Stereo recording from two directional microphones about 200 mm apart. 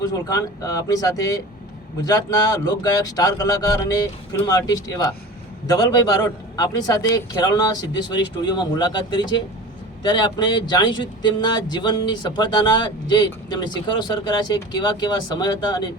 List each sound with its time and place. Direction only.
0.0 s speech: 15° left (ahead or behind)